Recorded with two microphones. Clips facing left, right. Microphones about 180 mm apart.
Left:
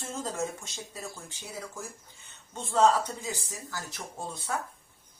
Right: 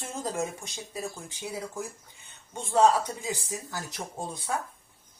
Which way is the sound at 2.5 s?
15° right (ahead or behind).